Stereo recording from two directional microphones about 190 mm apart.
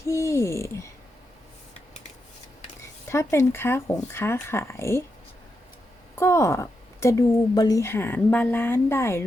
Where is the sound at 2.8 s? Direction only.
15° left (ahead or behind).